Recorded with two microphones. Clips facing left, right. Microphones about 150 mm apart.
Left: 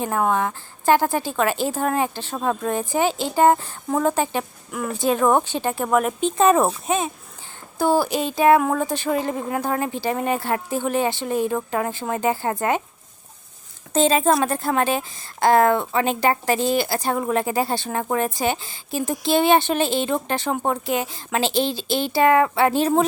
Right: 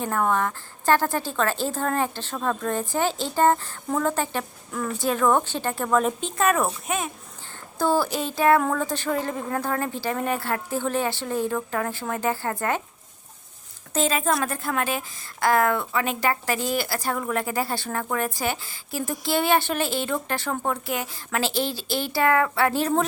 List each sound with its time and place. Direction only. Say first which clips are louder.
0.0 s speech: left 2 dB; 15° left (ahead or behind)
6.1 s a woman's voice: left 6 dB; 20° left (ahead or behind)
7.8 s speech: left 3 dB; 15° left (ahead or behind)
13.9 s a woman's voice: left 6 dB; 30° left (ahead or behind)